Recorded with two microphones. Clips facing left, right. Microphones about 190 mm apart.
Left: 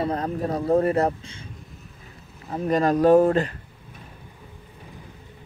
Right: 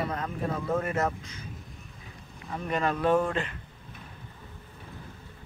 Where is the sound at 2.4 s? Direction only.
35° left (ahead or behind).